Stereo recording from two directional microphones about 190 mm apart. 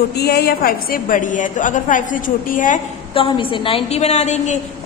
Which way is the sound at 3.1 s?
30° left (ahead or behind).